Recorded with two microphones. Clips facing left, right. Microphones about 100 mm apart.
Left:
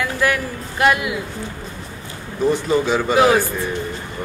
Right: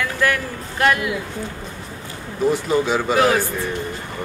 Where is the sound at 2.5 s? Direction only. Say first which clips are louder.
Left 1 dB; centre (ahead or behind).